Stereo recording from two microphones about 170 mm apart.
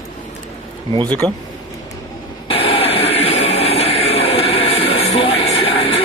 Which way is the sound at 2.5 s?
35° left (ahead or behind).